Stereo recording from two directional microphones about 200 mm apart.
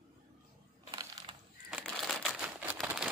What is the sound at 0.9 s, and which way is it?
Crushing, 20° right (ahead or behind).